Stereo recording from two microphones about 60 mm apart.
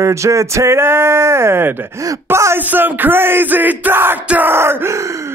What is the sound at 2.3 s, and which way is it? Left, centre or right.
Speech, right.